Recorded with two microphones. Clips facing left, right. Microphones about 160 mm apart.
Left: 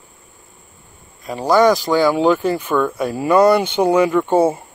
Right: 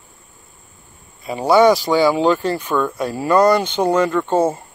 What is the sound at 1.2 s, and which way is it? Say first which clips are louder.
Speech: right 1 dB; 5° right (ahead or behind).